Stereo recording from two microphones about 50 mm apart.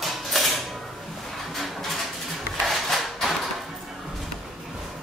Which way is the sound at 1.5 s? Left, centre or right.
Centre.